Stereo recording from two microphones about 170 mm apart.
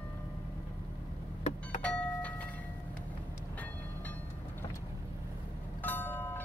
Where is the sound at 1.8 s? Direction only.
5° left (ahead or behind).